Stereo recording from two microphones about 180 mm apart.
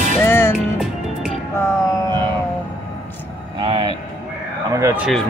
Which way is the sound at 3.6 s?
30° right (ahead or behind).